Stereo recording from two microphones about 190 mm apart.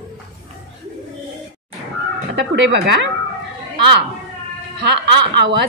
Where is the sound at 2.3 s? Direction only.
65° right (ahead or behind).